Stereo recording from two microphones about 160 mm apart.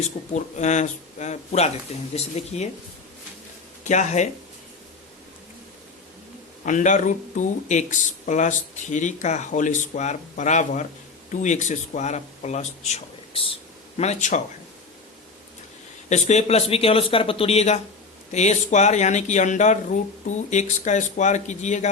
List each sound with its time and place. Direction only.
0.3 s speech: 45° left (ahead or behind)
3.8 s speech: 50° left (ahead or behind)
6.7 s speech: 50° left (ahead or behind)
16.0 s a man's voice: 45° left (ahead or behind)